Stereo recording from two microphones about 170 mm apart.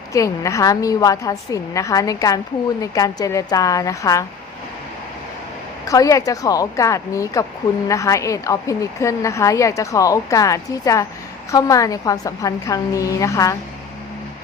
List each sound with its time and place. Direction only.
0.1 s a woman's voice: 20° left (ahead or behind)
5.8 s a woman's voice: 20° left (ahead or behind)